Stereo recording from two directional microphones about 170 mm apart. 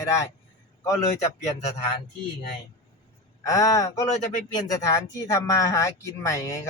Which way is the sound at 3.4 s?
20° left (ahead or behind).